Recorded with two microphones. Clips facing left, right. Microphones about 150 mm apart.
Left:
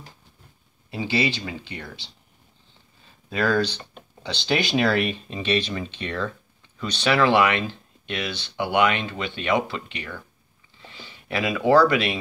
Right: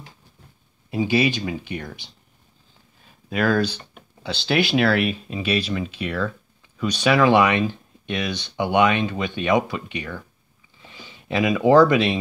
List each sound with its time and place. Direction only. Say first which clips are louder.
0.8 s speech: right 4 dB; 15° right (ahead or behind)
3.3 s speech: right 2 dB; 10° right (ahead or behind)